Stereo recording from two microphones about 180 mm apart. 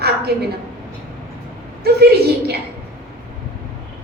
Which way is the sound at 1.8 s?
60° right (ahead or behind).